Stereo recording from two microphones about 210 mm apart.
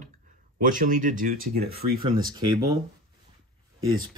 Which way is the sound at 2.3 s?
20° right (ahead or behind).